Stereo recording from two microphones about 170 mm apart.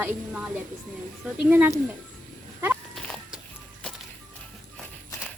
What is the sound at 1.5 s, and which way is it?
Speech, 10° right (ahead or behind).